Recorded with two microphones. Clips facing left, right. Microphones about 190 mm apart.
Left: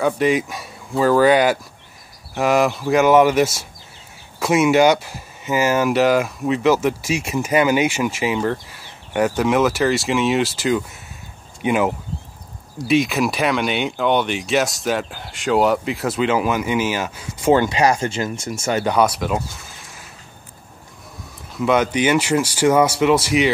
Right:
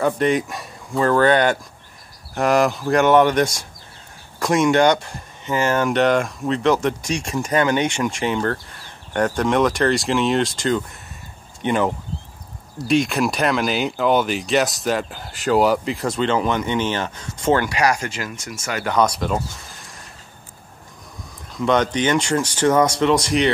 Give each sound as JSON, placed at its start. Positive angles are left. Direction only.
{"t": 0.0, "sound": "speech", "side_deg": 0}
{"t": 17.6, "sound": "speech", "side_deg": 25}
{"t": 18.9, "sound": "speech", "side_deg": 5}
{"t": 21.5, "sound": "speech", "side_deg": 5}